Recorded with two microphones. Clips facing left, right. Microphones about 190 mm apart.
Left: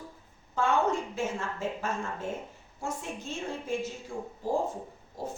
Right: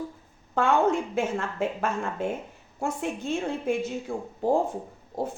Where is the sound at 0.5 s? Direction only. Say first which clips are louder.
Right 4 dB; 60° right (ahead or behind).